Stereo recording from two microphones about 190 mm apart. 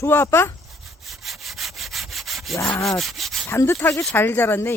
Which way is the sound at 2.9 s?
Centre (ahead or behind).